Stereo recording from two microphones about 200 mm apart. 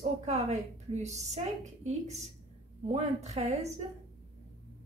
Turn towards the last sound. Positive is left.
turn(degrees=-35)  # may be behind; listen again after turning